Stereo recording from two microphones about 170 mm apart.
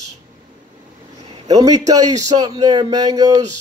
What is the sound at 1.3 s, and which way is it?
Speech, 20° right (ahead or behind).